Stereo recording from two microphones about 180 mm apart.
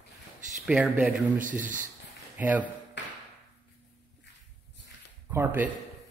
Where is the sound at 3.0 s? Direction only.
75° left (ahead or behind).